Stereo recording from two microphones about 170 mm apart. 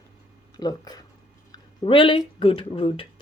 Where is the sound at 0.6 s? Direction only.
20° left (ahead or behind).